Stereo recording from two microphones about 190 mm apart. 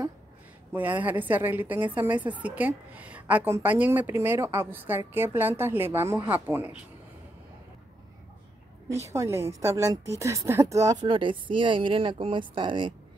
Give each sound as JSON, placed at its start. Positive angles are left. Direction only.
{"t": 0.7, "sound": "a woman's voice", "side_deg": -10}
{"t": 9.1, "sound": "a woman's voice", "side_deg": -15}